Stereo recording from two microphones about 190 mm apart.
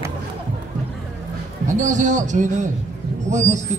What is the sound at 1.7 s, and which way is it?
A man's voice, 40° right (ahead or behind).